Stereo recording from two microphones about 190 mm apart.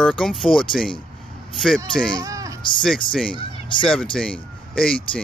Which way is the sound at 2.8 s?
5° left (ahead or behind).